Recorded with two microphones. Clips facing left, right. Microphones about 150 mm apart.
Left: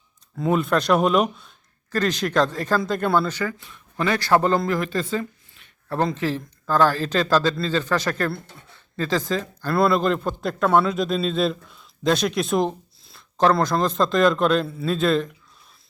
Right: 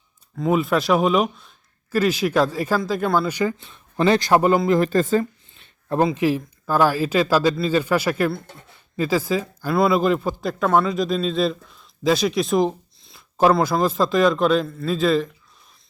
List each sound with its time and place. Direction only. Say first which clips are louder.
0.3 s speech: right 1 dB; centre (ahead or behind)
3.2 s a man's voice: right 4 dB; 15° right (ahead or behind)
3.7 s speech: right 6 dB; 30° right (ahead or behind)
4.2 s a man's voice: right 2 dB; 15° right (ahead or behind)
4.8 s speech: right 7 dB; 45° right (ahead or behind)
6.0 s speech: right 4 dB; 10° right (ahead or behind)